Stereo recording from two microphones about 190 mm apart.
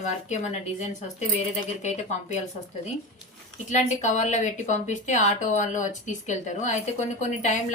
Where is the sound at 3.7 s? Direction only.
40° left (ahead or behind).